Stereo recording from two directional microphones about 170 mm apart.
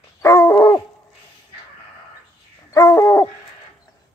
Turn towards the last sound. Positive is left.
turn(degrees=20)  # may be behind; listen again after turning